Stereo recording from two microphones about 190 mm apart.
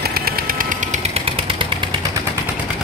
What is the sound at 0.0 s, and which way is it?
Vehicle, 55° right (ahead or behind).